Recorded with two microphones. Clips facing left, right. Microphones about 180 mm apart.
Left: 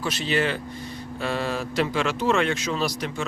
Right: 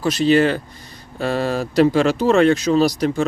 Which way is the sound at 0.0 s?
40° right (ahead or behind).